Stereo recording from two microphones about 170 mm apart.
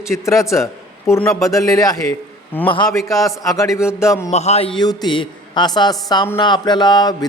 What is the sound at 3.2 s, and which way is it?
Speech, 20° left (ahead or behind).